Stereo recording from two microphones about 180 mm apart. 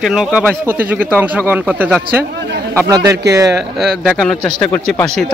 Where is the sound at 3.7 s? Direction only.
Centre (ahead or behind).